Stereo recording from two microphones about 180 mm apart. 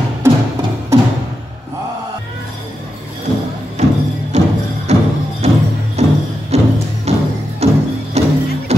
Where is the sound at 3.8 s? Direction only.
40° right (ahead or behind).